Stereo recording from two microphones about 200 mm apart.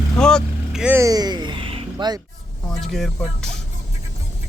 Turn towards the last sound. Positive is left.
turn(degrees=5)  # may be behind; listen again after turning